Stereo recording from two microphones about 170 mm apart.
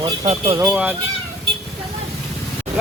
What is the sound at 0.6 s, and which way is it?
Speech, 10° right (ahead or behind).